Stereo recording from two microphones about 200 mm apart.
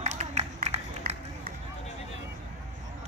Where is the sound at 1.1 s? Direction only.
45° right (ahead or behind).